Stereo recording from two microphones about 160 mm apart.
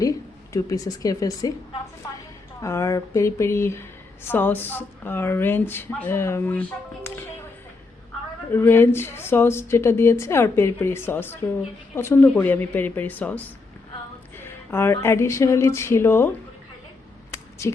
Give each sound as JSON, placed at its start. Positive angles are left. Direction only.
{"t": 0.5, "sound": "speech", "side_deg": 20}
{"t": 2.6, "sound": "speech", "side_deg": 20}
{"t": 8.5, "sound": "speech", "side_deg": 15}